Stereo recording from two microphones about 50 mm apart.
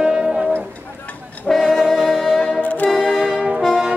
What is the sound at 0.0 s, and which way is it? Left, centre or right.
Music, centre.